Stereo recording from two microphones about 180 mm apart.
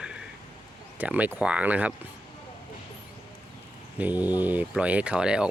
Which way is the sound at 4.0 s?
10° right (ahead or behind).